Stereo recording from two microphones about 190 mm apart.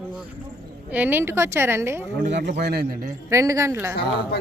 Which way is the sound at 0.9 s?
10° right (ahead or behind).